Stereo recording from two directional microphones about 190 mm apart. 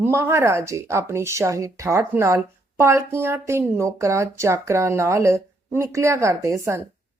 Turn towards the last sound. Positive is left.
turn(degrees=-15)  # may be behind; listen again after turning